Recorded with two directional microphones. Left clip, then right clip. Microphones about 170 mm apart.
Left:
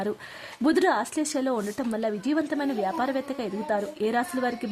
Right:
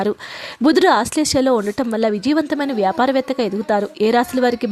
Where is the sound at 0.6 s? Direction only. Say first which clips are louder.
Right 9 dB; 35° right (ahead or behind).